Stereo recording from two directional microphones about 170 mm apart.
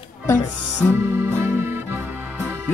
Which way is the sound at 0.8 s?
10° left (ahead or behind).